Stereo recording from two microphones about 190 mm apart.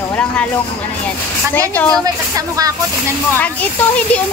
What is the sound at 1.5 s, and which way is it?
Speech, 10° left (ahead or behind).